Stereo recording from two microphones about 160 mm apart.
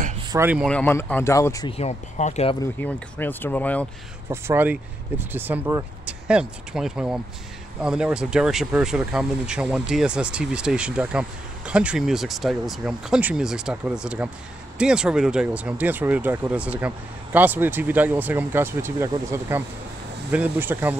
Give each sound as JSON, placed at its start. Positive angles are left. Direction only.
{"t": 0.3, "sound": "speech", "side_deg": -15}
{"t": 0.7, "sound": "speech", "side_deg": 10}
{"t": 1.7, "sound": "speech", "side_deg": 40}
{"t": 2.6, "sound": "speech", "side_deg": 10}
{"t": 4.3, "sound": "speech", "side_deg": -15}